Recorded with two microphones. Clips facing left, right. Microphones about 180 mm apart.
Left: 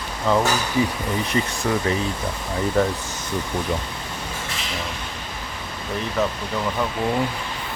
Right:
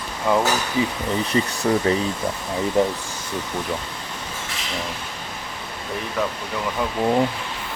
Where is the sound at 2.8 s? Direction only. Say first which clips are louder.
Right 1 dB; 15° right (ahead or behind).